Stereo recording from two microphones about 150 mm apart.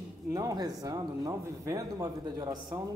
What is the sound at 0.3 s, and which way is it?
A man's voice, 25° right (ahead or behind).